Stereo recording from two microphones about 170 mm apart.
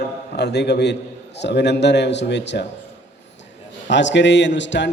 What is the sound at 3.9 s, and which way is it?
A man's voice, 90° left.